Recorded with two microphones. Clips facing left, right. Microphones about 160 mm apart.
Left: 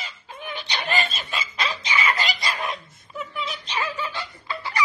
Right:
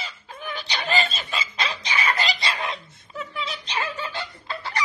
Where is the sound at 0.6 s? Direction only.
35° right (ahead or behind).